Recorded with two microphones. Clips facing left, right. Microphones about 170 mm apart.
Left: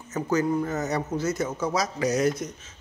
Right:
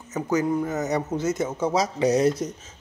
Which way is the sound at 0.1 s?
15° right (ahead or behind).